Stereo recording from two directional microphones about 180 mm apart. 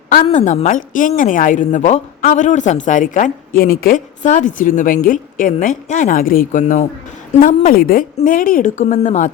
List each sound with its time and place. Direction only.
0.3 s speech: 40° left (ahead or behind)